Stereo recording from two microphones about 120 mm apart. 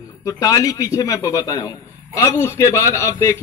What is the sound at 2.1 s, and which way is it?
A man's voice, 20° left (ahead or behind).